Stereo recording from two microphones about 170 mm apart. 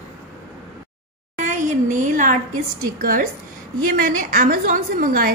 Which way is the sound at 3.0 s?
55° right (ahead or behind).